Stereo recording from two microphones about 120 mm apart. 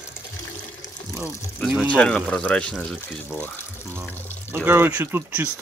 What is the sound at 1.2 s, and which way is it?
Speech, 5° right (ahead or behind).